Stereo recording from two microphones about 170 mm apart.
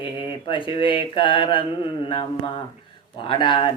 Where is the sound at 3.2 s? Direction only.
30° left (ahead or behind).